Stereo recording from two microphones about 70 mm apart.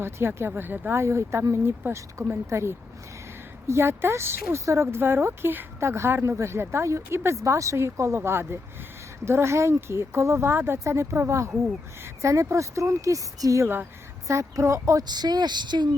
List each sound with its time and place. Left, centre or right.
0.0 s speech: right
1.0 s speech: right
10.5 s speech: right
10.8 s speech: right
15.0 s speech: right